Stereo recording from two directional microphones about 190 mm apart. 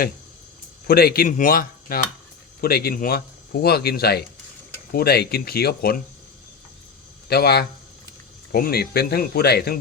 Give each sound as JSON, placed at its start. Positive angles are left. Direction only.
{"t": 0.9, "sound": "speech", "side_deg": 50}
{"t": 7.3, "sound": "speech", "side_deg": 55}